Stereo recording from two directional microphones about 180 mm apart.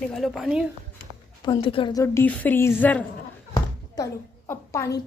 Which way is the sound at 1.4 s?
25° left (ahead or behind).